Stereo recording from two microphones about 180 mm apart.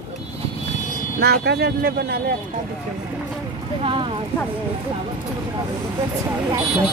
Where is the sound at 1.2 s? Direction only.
65° right (ahead or behind).